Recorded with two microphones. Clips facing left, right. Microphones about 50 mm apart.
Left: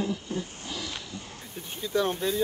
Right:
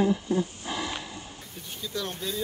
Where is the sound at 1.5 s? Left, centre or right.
Left.